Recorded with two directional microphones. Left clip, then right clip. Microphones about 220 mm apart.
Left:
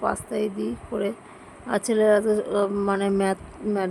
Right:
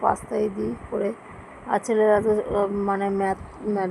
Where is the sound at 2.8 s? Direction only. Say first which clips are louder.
Even; 25° left (ahead or behind).